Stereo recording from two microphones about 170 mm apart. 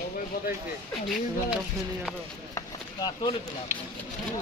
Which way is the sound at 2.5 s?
25° left (ahead or behind).